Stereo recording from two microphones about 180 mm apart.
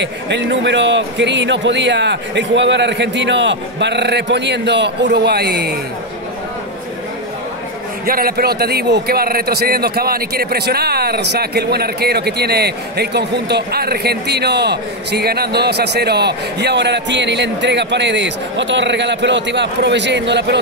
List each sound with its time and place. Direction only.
0.0 s a man's voice: 75° right (ahead or behind)
8.1 s a man's voice: 55° right (ahead or behind); by 20.5 s 75° right (ahead or behind)